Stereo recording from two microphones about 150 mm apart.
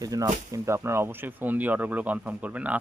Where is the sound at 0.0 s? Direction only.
25° right (ahead or behind).